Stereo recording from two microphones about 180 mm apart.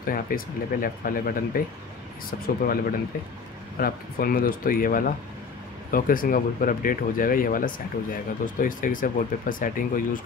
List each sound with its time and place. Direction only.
0.0 s speech: 55° left (ahead or behind)